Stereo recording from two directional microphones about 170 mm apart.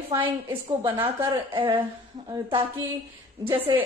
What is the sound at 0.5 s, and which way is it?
A woman's voice, 30° right (ahead or behind).